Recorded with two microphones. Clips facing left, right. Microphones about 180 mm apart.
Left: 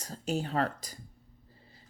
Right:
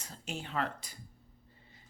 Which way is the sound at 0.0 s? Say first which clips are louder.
Left 9 dB; 40° left (ahead or behind).